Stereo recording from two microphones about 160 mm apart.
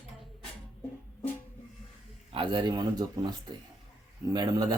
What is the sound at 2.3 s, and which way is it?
Speech, 30° right (ahead or behind).